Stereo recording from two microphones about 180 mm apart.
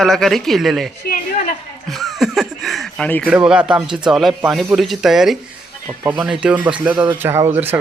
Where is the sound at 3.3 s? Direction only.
5° right (ahead or behind).